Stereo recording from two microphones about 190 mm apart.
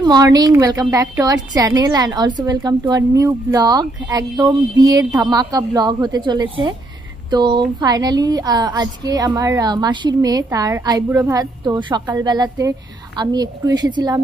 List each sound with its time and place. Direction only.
0.0 s speech: 20° right (ahead or behind)